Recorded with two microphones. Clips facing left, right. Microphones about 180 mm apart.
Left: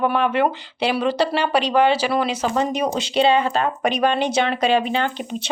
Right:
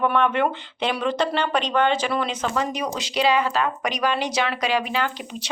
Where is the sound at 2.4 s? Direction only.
30° left (ahead or behind).